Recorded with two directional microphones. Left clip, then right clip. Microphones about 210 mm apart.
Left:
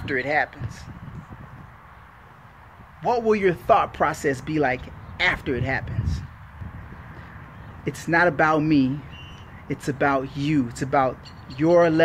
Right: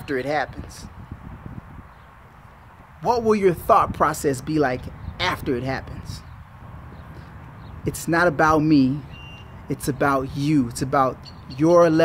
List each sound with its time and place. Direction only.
0.0 s speech: 15° right (ahead or behind)
3.0 s speech: 15° right (ahead or behind)
7.8 s speech: 15° right (ahead or behind)